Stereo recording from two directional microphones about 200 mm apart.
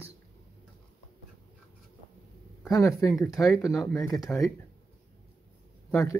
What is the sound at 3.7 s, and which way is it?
Speech, centre (ahead or behind).